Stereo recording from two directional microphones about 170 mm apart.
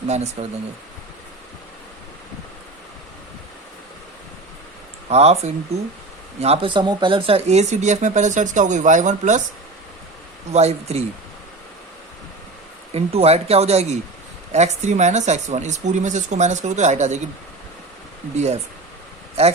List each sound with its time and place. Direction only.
0.4 s speech: 40° right (ahead or behind)
5.0 s speech: 40° right (ahead or behind)
10.5 s speech: 40° right (ahead or behind)
12.9 s speech: 35° right (ahead or behind)
18.3 s speech: 40° right (ahead or behind)